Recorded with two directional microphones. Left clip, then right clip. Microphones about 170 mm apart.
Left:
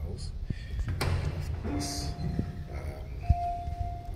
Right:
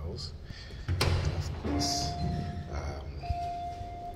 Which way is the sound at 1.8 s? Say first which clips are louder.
Right 9 dB; 25° left (ahead or behind).